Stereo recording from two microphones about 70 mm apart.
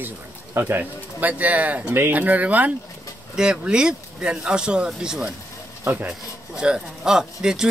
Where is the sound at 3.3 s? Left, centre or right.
Centre.